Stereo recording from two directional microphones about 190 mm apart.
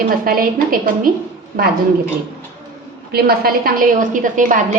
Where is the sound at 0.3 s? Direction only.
50° right (ahead or behind).